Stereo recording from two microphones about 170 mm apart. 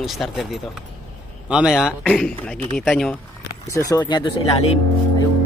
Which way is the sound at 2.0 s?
5° left (ahead or behind).